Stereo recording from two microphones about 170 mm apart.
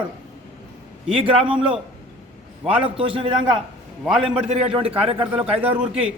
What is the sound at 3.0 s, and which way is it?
Speech, 30° right (ahead or behind).